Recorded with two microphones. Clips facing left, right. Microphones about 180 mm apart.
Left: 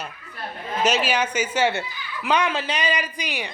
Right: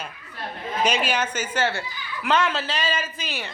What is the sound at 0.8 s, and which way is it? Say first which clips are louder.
A woman's voice: left 2 dB; 5° left (ahead or behind).